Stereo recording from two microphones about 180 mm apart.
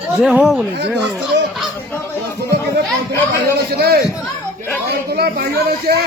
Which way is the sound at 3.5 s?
60° right (ahead or behind).